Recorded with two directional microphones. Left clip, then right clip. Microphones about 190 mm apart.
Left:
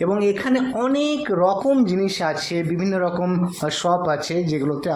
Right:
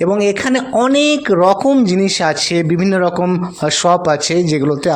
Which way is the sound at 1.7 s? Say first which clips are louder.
Right 6 dB; 30° right (ahead or behind).